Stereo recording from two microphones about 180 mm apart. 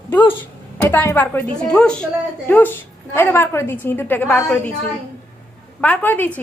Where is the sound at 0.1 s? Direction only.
10° left (ahead or behind).